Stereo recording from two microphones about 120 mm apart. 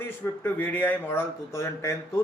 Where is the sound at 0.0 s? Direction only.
15° left (ahead or behind).